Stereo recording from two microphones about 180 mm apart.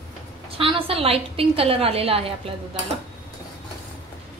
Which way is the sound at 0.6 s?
30° right (ahead or behind).